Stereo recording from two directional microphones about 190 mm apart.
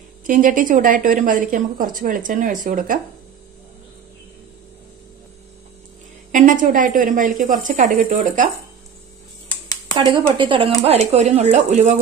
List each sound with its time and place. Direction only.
0.3 s a woman's voice: 45° right (ahead or behind)
6.3 s a woman's voice: 45° right (ahead or behind)
9.9 s speech: 20° right (ahead or behind); by 11.9 s 40° right (ahead or behind)